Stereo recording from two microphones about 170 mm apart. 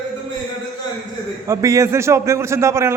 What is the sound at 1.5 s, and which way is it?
A man's voice, 20° right (ahead or behind).